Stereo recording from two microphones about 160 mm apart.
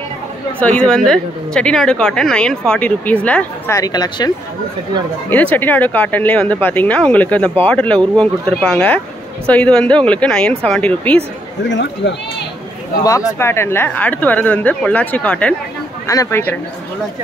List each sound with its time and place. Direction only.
0.6 s a woman's voice: 5° left (ahead or behind)
3.7 s speech: 25° left (ahead or behind)
5.3 s a woman's voice: 10° left (ahead or behind)
11.6 s speech: 90° left
13.4 s speech: 15° left (ahead or behind)